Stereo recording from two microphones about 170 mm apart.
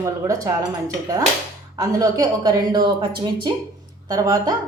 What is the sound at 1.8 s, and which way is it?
A woman's voice, 20° right (ahead or behind).